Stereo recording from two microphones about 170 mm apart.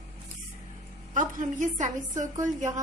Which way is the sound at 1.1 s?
50° right (ahead or behind).